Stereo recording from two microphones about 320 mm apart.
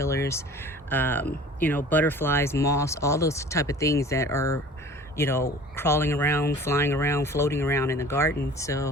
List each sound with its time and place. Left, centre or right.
0.0 s speech: centre